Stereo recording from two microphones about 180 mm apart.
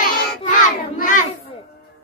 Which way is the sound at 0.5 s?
45° left (ahead or behind).